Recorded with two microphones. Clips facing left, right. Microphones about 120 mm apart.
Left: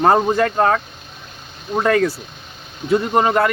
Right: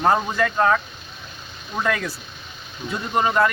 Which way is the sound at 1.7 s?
45° left (ahead or behind).